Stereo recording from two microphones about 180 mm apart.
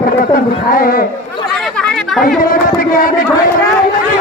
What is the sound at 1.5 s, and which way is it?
Chatter, 5° left (ahead or behind).